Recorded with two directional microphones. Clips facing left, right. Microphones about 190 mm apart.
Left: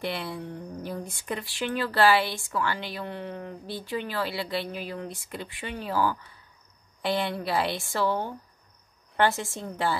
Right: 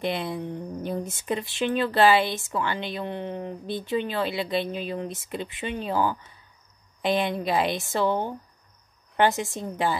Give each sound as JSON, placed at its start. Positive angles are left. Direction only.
{"t": 0.0, "sound": "speech", "side_deg": -20}